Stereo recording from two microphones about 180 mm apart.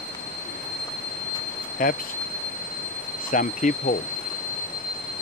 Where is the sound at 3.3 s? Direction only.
45° left (ahead or behind).